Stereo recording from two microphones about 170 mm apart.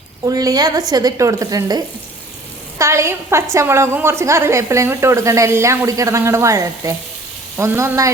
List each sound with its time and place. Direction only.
0.3 s a woman's voice: 20° right (ahead or behind)